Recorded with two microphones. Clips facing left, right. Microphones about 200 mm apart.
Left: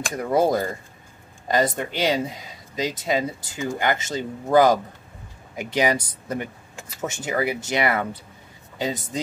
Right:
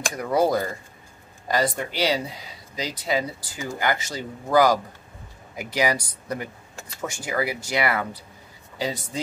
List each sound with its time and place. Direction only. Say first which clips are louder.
0.1 s speech: left 1 dB; 25° left (ahead or behind)